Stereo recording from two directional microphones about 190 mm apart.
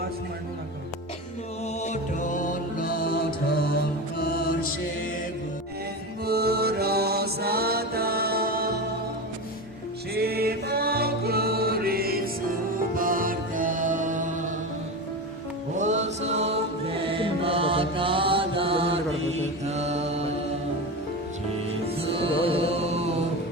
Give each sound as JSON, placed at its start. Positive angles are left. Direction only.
{"t": 1.8, "sound": "music", "side_deg": 40}
{"t": 4.2, "sound": "music", "side_deg": 50}
{"t": 6.2, "sound": "music", "side_deg": -55}
{"t": 10.2, "sound": "music", "side_deg": -55}
{"t": 15.8, "sound": "music", "side_deg": -35}
{"t": 19.4, "sound": "mantra", "side_deg": -35}
{"t": 22.0, "sound": "music", "side_deg": -30}